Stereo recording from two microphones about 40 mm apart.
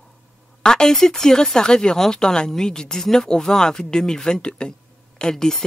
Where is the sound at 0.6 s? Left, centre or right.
Centre.